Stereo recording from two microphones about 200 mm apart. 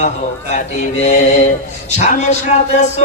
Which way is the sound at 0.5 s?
35° left (ahead or behind).